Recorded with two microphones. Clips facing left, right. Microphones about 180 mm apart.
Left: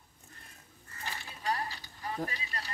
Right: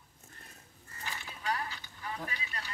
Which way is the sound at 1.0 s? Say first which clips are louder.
Left 2 dB; 35° left (ahead or behind).